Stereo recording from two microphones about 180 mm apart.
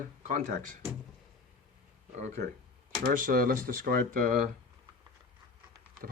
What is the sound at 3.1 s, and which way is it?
Speech, 50° right (ahead or behind).